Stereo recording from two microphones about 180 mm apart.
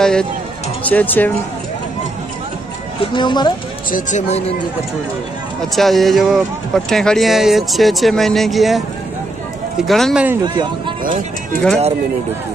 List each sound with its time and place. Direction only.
0.0 s speech: 5° left (ahead or behind)
3.0 s speech: 25° left (ahead or behind)
3.9 s speech: 40° left (ahead or behind)
5.6 s speech: centre (ahead or behind)
9.8 s speech: centre (ahead or behind)
10.4 s a man's voice: 25° right (ahead or behind)